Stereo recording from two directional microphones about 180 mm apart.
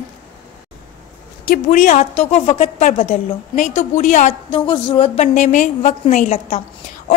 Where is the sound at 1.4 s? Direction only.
45° left (ahead or behind).